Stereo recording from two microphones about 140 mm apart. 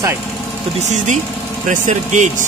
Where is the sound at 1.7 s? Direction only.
60° right (ahead or behind).